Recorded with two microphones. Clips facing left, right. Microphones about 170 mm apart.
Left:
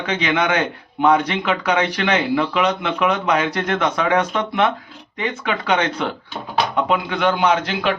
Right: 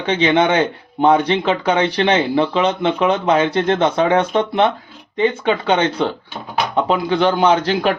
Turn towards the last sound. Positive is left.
turn(degrees=-35)  # may be behind; listen again after turning